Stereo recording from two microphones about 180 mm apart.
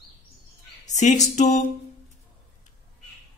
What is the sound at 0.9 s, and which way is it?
Speech, 40° left (ahead or behind).